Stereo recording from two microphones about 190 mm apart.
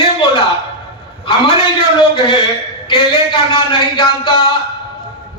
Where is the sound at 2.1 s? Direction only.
25° left (ahead or behind).